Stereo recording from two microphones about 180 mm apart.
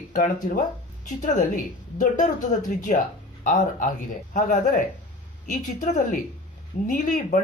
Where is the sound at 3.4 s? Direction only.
45° left (ahead or behind).